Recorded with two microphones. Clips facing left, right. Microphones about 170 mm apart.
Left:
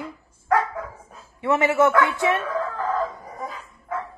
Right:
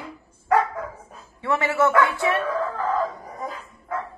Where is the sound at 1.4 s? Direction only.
20° left (ahead or behind).